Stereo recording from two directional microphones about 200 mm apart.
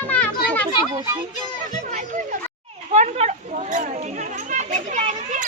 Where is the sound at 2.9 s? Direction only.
35° right (ahead or behind).